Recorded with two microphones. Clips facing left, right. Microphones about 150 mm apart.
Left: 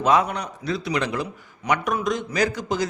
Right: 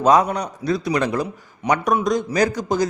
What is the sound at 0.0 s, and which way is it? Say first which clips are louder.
A man's voice: right 4 dB; 40° right (ahead or behind).